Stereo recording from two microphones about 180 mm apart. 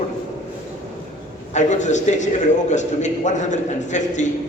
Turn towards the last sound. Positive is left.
turn(degrees=40)  # may be behind; listen again after turning